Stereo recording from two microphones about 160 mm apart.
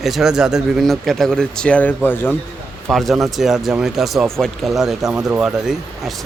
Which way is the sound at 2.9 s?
Centre (ahead or behind).